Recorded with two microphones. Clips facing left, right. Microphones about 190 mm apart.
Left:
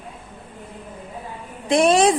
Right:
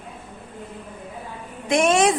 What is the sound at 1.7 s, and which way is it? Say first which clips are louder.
Speech: left 2 dB; 35° left (ahead or behind).